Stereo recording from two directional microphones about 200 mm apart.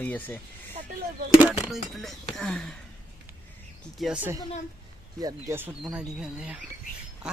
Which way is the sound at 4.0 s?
5° right (ahead or behind).